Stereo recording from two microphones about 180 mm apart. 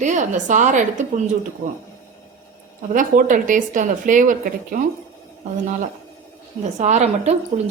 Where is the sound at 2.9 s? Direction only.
45° right (ahead or behind).